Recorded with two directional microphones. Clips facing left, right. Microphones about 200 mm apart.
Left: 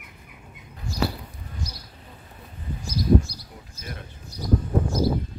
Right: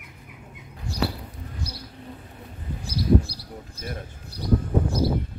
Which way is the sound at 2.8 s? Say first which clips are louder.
Left 1 dB; 60° right (ahead or behind).